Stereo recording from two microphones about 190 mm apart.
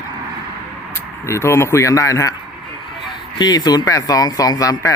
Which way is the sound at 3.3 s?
20° left (ahead or behind).